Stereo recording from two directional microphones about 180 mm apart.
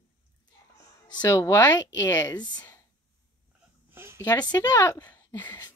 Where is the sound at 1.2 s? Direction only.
15° left (ahead or behind).